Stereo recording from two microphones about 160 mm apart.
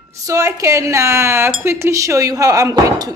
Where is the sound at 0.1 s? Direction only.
20° right (ahead or behind).